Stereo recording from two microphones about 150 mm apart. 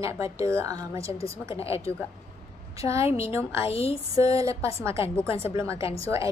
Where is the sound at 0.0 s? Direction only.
20° right (ahead or behind).